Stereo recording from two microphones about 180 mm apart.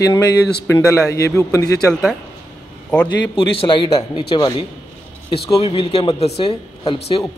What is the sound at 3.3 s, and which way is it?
Speech, 25° left (ahead or behind).